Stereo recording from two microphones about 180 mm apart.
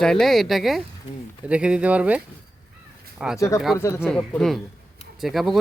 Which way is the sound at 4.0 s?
5° left (ahead or behind).